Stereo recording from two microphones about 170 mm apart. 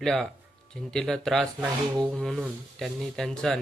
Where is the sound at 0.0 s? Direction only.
Centre (ahead or behind).